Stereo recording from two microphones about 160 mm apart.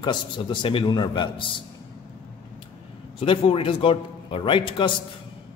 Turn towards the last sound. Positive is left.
turn(degrees=30)  # may be behind; listen again after turning